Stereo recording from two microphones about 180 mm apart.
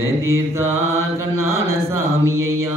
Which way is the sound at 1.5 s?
15° right (ahead or behind).